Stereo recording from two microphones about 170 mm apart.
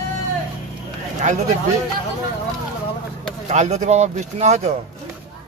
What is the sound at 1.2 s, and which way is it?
Speech, 45° right (ahead or behind).